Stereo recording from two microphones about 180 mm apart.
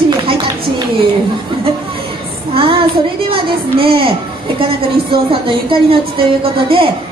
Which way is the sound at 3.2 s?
30° right (ahead or behind).